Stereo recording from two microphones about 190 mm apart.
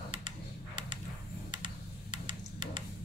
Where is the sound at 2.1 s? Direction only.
25° right (ahead or behind).